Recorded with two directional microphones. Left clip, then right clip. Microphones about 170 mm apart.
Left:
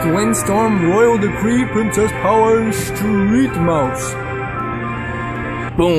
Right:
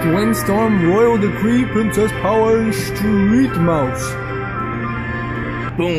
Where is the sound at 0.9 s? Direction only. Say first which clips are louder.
Left 1 dB; 5° right (ahead or behind).